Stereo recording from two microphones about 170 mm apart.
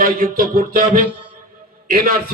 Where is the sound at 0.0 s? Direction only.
55° right (ahead or behind).